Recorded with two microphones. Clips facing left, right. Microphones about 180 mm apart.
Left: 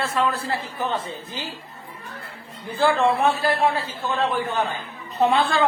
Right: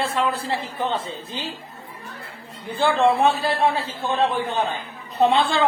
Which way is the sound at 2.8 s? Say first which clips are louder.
Right 1 dB; 20° right (ahead or behind).